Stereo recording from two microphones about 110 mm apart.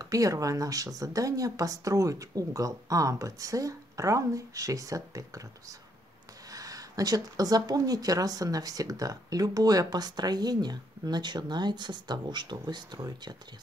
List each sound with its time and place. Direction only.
0.0 s speech: 30° right (ahead or behind)